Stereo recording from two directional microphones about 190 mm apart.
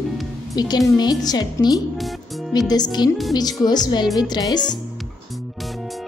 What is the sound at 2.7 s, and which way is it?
A woman's voice, 20° left (ahead or behind).